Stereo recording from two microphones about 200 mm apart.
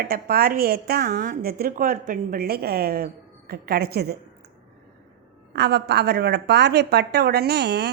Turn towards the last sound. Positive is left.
turn(degrees=-55)  # may be behind; listen again after turning